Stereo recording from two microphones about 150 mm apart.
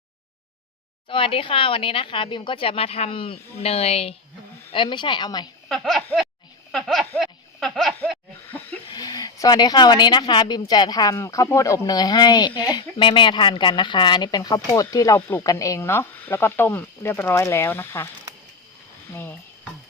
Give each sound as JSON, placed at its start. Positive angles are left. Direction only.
{"t": 1.0, "sound": "a woman's voice", "side_deg": 35}
{"t": 5.6, "sound": "speech", "side_deg": 0}
{"t": 6.7, "sound": "snicker", "side_deg": 0}
{"t": 7.2, "sound": "speech", "side_deg": 0}
{"t": 8.4, "sound": "a sound", "side_deg": 10}
{"t": 8.9, "sound": "speech", "side_deg": 25}
{"t": 19.1, "sound": "a sound", "side_deg": 15}